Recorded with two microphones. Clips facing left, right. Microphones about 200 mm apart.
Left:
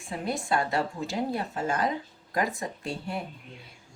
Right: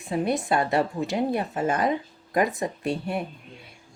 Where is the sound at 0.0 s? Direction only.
20° right (ahead or behind).